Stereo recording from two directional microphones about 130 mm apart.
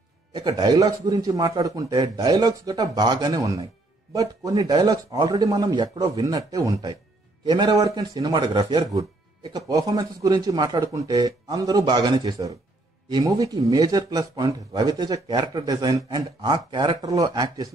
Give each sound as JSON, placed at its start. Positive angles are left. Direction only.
{"t": 0.3, "sound": "a man's voice", "side_deg": -35}
{"t": 17.0, "sound": "speech", "side_deg": -25}